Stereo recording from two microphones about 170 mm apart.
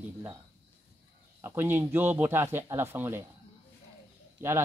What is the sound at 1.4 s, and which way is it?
Speech, 15° right (ahead or behind).